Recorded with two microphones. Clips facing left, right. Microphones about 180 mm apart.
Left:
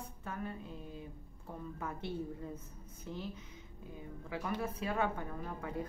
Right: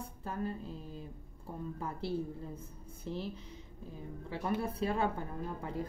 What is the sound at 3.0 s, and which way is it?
Speech, 30° right (ahead or behind).